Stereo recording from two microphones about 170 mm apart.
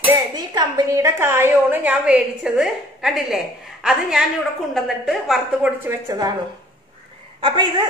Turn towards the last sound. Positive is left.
turn(degrees=-30)  # may be behind; listen again after turning